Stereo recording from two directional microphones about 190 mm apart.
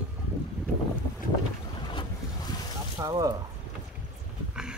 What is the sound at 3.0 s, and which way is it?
Speech, 20° right (ahead or behind).